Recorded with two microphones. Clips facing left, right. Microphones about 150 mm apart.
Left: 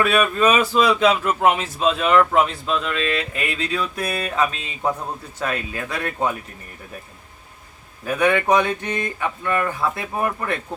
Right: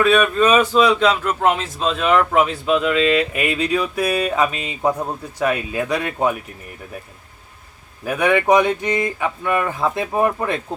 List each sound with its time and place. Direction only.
0.1 s speech: 10° left (ahead or behind); by 6.2 s 20° right (ahead or behind)
8.0 s speech: 15° right (ahead or behind)